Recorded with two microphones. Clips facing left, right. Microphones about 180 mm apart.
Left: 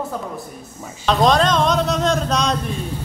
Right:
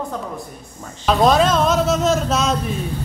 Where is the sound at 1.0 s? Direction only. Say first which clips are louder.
Right 1 dB; 5° right (ahead or behind).